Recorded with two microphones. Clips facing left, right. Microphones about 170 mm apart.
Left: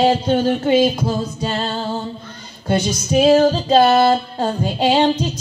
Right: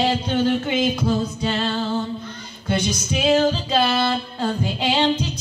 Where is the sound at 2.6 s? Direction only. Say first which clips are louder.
Left 4 dB; 40° left (ahead or behind).